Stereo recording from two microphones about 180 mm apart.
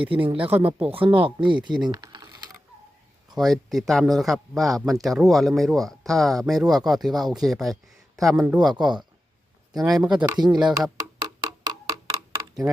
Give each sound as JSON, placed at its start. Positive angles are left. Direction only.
{"t": 0.1, "sound": "speech", "side_deg": -30}
{"t": 0.5, "sound": "speech", "side_deg": -10}
{"t": 0.9, "sound": "speech", "side_deg": -30}
{"t": 3.3, "sound": "speech", "side_deg": 0}
{"t": 8.7, "sound": "speech", "side_deg": -25}
{"t": 9.7, "sound": "speech", "side_deg": 0}
{"t": 10.2, "sound": "speech", "side_deg": -25}
{"t": 10.9, "sound": "a sound", "side_deg": -20}
{"t": 12.6, "sound": "speech", "side_deg": -5}